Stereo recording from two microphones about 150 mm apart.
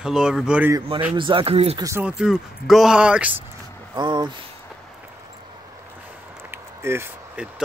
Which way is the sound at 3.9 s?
30° right (ahead or behind).